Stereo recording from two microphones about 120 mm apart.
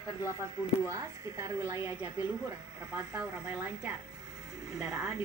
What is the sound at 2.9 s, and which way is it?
Speech, 10° right (ahead or behind).